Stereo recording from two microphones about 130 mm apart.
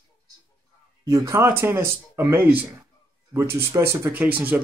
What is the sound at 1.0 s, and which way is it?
Speech, 30° right (ahead or behind).